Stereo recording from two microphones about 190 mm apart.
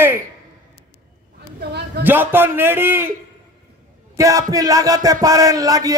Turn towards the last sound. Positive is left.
turn(degrees=-20)  # may be behind; listen again after turning